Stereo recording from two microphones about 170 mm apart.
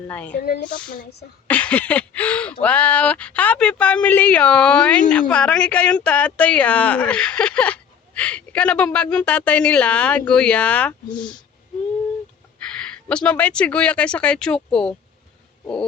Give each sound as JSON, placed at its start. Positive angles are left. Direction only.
{"t": 0.1, "sound": "speech", "side_deg": 10}
{"t": 0.3, "sound": "speech", "side_deg": 60}
{"t": 1.5, "sound": "speech", "side_deg": 10}
{"t": 12.7, "sound": "speech", "side_deg": 5}